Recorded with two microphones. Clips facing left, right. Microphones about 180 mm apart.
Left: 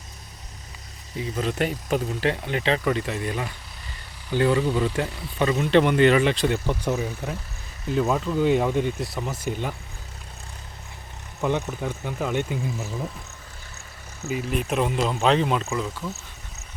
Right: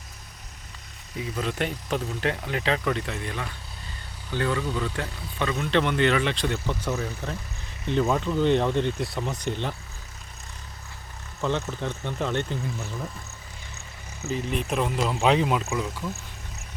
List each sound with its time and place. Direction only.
1.1 s speech: centre (ahead or behind)
4.4 s speech: 20° left (ahead or behind)
5.7 s speech: 5° left (ahead or behind)
11.3 s speech: 15° left (ahead or behind)
14.3 s speech: 5° left (ahead or behind)